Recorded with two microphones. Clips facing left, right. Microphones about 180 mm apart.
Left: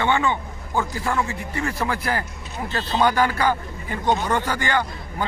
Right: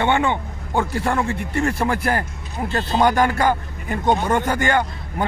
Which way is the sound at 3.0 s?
45° right (ahead or behind).